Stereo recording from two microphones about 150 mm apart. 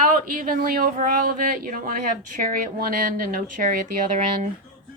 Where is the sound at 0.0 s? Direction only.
65° right (ahead or behind).